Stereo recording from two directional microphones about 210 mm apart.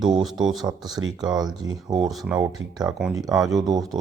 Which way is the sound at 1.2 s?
20° right (ahead or behind).